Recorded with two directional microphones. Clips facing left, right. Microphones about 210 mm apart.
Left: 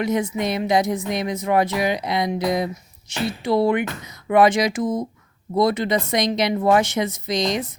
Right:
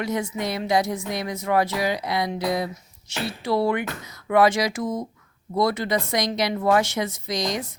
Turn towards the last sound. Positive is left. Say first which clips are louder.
# left 4 dB
turn(degrees=20)  # may be behind; listen again after turning